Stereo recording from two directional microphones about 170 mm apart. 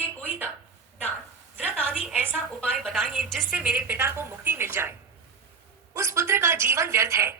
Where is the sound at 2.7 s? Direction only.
Centre (ahead or behind).